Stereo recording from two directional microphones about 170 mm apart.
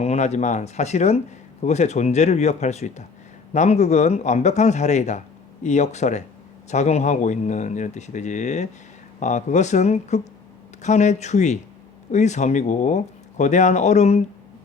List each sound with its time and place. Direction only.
0.0 s speech: 40° left (ahead or behind)